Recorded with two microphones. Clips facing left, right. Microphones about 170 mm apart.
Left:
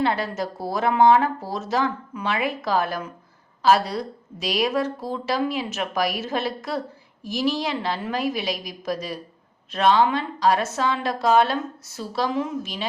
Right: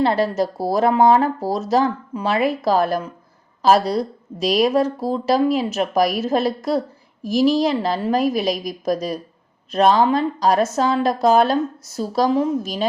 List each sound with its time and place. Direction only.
0.0 s a woman's voice: 35° right (ahead or behind)